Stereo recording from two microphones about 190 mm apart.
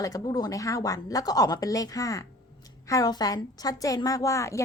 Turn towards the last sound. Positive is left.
turn(degrees=15)  # may be behind; listen again after turning